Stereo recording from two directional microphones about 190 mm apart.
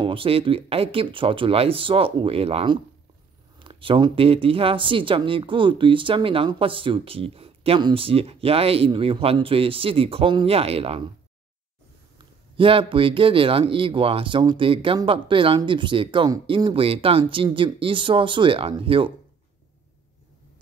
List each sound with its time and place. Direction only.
0.0 s speech: 30° right (ahead or behind)
12.5 s speech: 30° right (ahead or behind)